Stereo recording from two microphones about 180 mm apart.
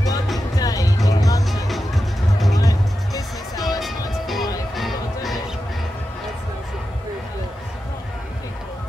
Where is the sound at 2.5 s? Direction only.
20° left (ahead or behind).